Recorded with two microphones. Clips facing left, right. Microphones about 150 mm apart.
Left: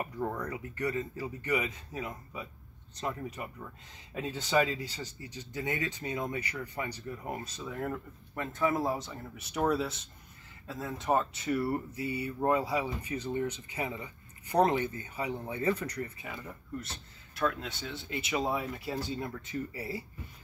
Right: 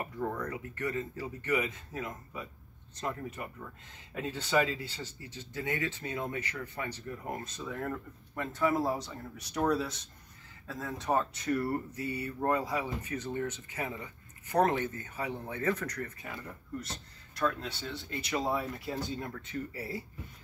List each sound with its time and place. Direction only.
0.0 s speech: 15° left (ahead or behind)
8.5 s speech: 5° left (ahead or behind)